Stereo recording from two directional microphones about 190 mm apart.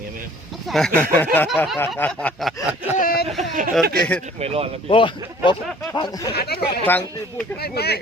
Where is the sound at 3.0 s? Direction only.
50° left (ahead or behind).